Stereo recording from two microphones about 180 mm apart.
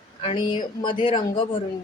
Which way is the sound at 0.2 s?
30° left (ahead or behind).